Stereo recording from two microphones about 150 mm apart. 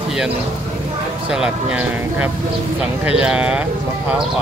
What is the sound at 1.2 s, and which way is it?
Speech, 5° right (ahead or behind).